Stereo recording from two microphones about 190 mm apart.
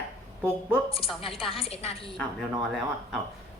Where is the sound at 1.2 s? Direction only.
30° left (ahead or behind).